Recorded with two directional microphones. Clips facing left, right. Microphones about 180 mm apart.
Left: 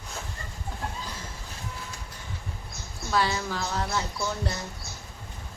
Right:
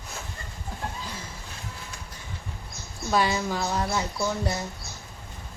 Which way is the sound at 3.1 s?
15° right (ahead or behind).